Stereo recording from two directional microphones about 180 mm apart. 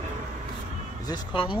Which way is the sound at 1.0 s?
25° left (ahead or behind).